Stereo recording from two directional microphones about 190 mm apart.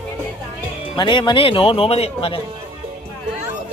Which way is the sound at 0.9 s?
25° left (ahead or behind).